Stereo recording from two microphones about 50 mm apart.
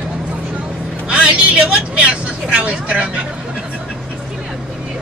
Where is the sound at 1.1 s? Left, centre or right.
Centre.